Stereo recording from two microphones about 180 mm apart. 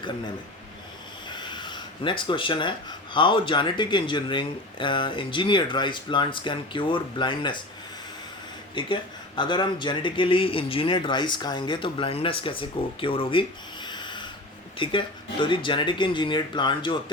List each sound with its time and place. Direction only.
1.3 s speech: 25° left (ahead or behind)
8.7 s speech: 25° left (ahead or behind)
13.8 s a sound: 25° left (ahead or behind)
14.8 s speech: 30° left (ahead or behind)